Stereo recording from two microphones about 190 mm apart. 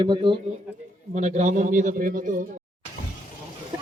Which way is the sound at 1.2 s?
40° right (ahead or behind).